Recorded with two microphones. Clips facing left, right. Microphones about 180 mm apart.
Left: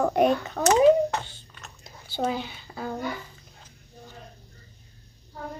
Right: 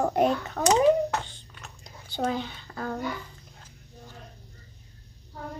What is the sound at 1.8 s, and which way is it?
Speech, 5° left (ahead or behind).